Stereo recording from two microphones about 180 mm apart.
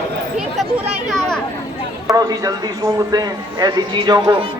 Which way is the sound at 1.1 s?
5° left (ahead or behind).